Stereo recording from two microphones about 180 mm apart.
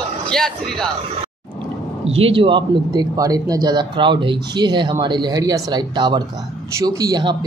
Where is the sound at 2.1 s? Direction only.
30° right (ahead or behind).